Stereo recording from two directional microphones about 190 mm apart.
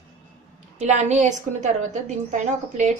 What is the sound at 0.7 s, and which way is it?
A woman's voice, 40° right (ahead or behind).